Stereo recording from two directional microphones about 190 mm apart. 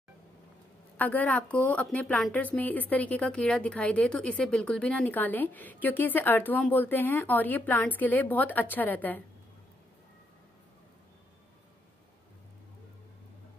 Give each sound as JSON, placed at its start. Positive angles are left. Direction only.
{"t": 0.9, "sound": "a woman's voice", "side_deg": 10}